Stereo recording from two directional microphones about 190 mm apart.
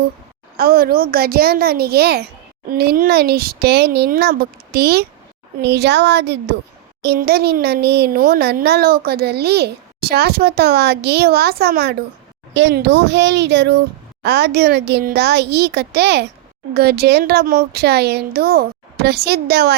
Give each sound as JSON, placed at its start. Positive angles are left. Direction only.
{"t": 0.5, "sound": "speech", "side_deg": -50}